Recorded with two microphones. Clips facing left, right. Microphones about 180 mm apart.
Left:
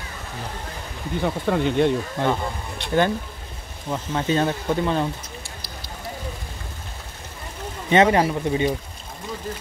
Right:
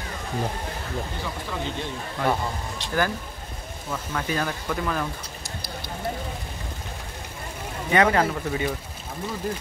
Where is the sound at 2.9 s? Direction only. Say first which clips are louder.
Left 5 dB; 25° left (ahead or behind).